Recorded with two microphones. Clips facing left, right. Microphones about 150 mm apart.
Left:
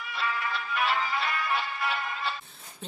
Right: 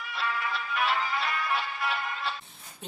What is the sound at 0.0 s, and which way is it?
Music, centre (ahead or behind).